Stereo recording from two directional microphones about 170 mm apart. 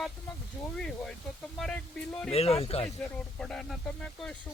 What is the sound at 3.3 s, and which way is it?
Speech, 5° left (ahead or behind).